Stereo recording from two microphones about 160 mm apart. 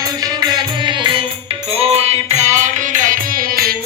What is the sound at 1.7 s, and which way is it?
Music, 40° right (ahead or behind).